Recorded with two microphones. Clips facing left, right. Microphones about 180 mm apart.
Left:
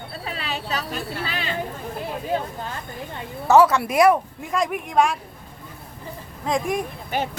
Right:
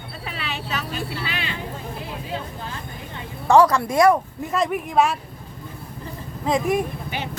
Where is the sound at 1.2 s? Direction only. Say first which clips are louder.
Left 2 dB; 45° left (ahead or behind).